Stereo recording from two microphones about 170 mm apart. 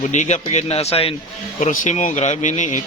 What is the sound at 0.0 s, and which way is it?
A man's voice, 45° left (ahead or behind).